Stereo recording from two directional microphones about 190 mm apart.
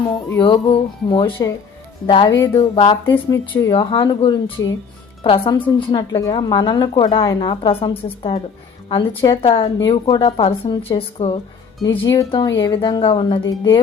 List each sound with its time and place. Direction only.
0.3 s speech: 25° left (ahead or behind)
11.8 s speech: 20° left (ahead or behind)